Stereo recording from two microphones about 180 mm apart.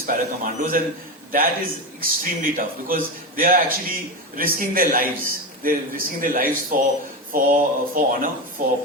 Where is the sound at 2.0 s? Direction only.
50° right (ahead or behind).